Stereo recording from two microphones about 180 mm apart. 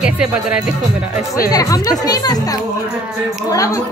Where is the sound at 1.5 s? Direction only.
20° left (ahead or behind).